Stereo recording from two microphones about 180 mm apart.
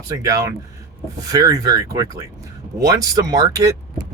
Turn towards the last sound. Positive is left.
turn(degrees=-20)  # may be behind; listen again after turning